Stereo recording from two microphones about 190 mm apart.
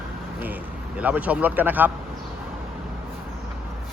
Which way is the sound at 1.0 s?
10° right (ahead or behind).